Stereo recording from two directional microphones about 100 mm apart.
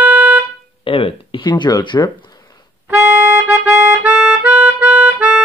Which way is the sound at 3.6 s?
10° right (ahead or behind).